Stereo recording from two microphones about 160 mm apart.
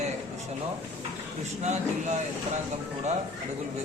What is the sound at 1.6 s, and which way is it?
Speech, 45° right (ahead or behind).